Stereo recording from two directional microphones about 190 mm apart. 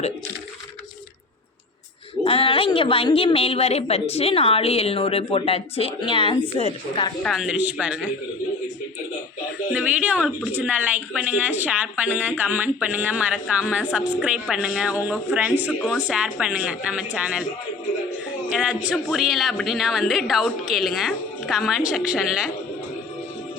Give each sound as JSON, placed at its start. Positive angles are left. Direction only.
{"t": 2.2, "sound": "a woman's voice", "side_deg": 30}
{"t": 7.2, "sound": "a woman's voice", "side_deg": 0}
{"t": 9.7, "sound": "a woman's voice", "side_deg": -5}
{"t": 18.5, "sound": "a woman's voice", "side_deg": -5}